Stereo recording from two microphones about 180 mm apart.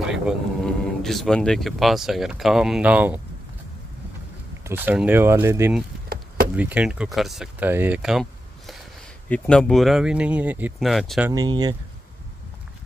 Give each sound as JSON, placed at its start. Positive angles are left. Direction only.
{"t": 0.1, "sound": "speech", "side_deg": 0}
{"t": 4.6, "sound": "speech", "side_deg": -10}
{"t": 11.2, "sound": "speech", "side_deg": -20}